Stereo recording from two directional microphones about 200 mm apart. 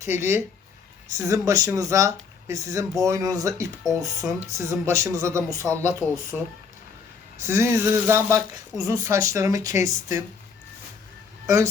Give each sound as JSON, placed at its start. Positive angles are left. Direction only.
{"t": 0.0, "sound": "speech", "side_deg": -15}
{"t": 6.3, "sound": "speech", "side_deg": -5}
{"t": 11.4, "sound": "speech", "side_deg": -15}